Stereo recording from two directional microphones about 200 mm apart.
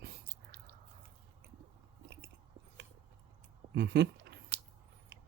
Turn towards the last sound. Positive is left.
turn(degrees=-55)  # may be behind; listen again after turning